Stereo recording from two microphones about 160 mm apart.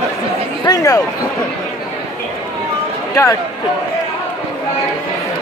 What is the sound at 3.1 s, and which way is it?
Speech, 20° left (ahead or behind).